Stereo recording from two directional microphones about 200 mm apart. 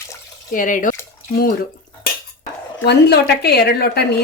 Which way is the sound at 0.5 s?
40° left (ahead or behind).